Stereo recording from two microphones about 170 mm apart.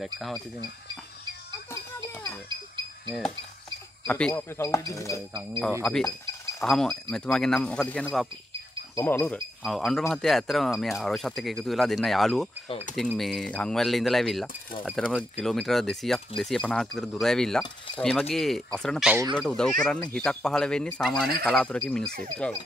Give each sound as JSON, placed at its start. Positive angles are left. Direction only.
{"t": 0.0, "sound": "speech", "side_deg": 0}
{"t": 1.7, "sound": "music", "side_deg": 15}
{"t": 4.1, "sound": "speech", "side_deg": 10}
{"t": 5.9, "sound": "speech", "side_deg": 5}
{"t": 8.9, "sound": "speech", "side_deg": 15}
{"t": 9.6, "sound": "speech", "side_deg": 0}
{"t": 12.6, "sound": "speech", "side_deg": 35}
{"t": 12.9, "sound": "speech", "side_deg": 0}